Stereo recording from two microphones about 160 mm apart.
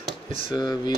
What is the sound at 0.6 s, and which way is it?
Speech, 25° left (ahead or behind).